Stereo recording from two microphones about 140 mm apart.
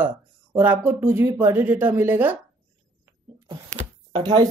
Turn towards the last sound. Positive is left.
turn(degrees=-30)  # may be behind; listen again after turning